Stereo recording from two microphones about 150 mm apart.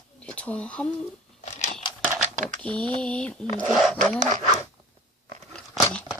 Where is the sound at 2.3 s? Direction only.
55° right (ahead or behind).